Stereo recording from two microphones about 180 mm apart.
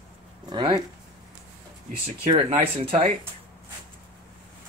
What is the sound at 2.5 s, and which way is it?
Speech, 35° right (ahead or behind).